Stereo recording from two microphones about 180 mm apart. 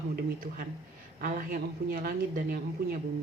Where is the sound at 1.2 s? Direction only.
50° right (ahead or behind).